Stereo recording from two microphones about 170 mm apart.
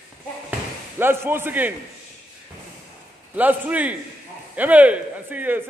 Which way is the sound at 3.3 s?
10° right (ahead or behind).